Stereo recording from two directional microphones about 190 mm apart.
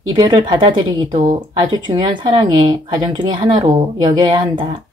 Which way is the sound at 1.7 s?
25° right (ahead or behind).